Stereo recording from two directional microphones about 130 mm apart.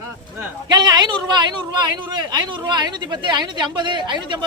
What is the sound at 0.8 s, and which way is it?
Speech, 35° right (ahead or behind).